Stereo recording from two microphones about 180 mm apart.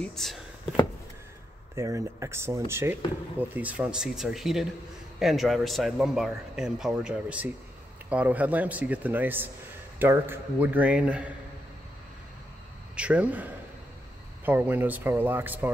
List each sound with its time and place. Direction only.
0.0 s a man's voice: centre (ahead or behind)
1.8 s a man's voice: 15° right (ahead or behind)
12.9 s a man's voice: 5° right (ahead or behind)